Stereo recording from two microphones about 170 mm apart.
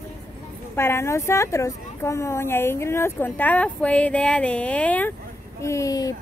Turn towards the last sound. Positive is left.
turn(degrees=20)  # may be behind; listen again after turning